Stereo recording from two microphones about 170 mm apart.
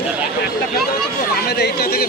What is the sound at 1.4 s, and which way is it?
Speech, 65° left (ahead or behind).